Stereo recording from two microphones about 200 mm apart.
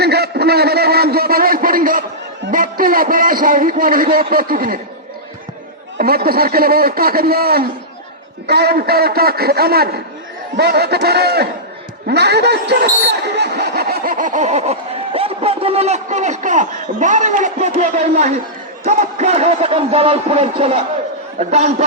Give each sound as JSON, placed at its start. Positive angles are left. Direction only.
{"t": 0.0, "sound": "a man's voice", "side_deg": -55}
{"t": 6.0, "sound": "a man's voice", "side_deg": -50}